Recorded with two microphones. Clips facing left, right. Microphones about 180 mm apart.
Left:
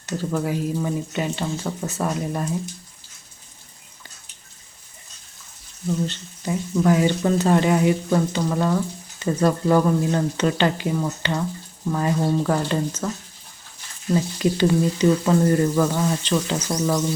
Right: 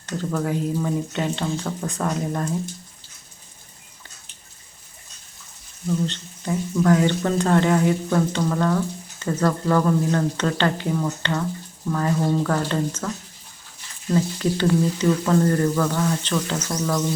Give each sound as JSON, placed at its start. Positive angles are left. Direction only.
{"t": 0.0, "sound": "speech", "side_deg": 10}
{"t": 6.1, "sound": "speech", "side_deg": 10}
{"t": 14.1, "sound": "speech", "side_deg": 15}